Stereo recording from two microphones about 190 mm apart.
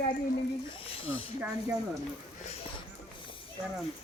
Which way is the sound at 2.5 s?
30° left (ahead or behind).